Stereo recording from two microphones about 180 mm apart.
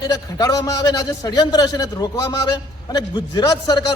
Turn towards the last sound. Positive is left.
turn(degrees=20)  # may be behind; listen again after turning